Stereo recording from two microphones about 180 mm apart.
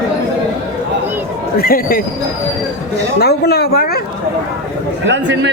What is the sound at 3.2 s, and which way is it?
Speech, 60° left (ahead or behind).